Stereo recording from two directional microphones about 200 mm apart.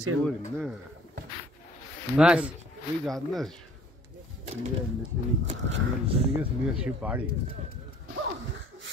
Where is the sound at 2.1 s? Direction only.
5° right (ahead or behind).